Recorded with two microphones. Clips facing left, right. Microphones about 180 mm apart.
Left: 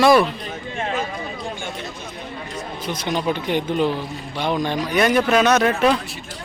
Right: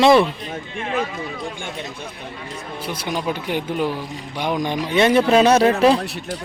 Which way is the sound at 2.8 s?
10° right (ahead or behind).